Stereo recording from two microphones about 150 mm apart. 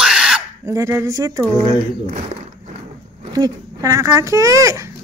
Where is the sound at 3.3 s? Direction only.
25° right (ahead or behind).